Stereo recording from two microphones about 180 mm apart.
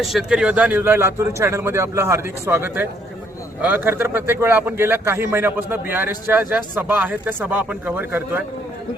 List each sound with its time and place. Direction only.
0.0 s speech: centre (ahead or behind)